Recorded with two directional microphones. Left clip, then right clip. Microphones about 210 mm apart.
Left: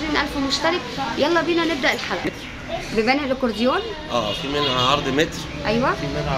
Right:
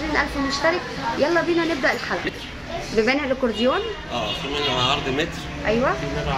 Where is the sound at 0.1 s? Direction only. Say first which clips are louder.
Even; 5° right (ahead or behind).